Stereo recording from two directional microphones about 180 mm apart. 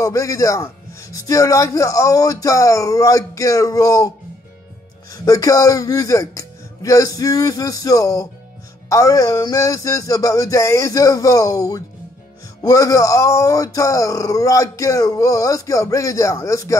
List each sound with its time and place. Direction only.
0.0 s a man's voice: 20° left (ahead or behind)
5.1 s a man's voice: 20° left (ahead or behind)